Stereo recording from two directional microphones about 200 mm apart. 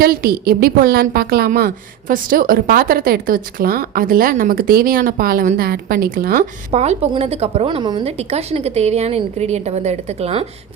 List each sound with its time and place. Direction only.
0.0 s a woman's voice: 50° right (ahead or behind)
6.7 s a woman's voice: 30° right (ahead or behind)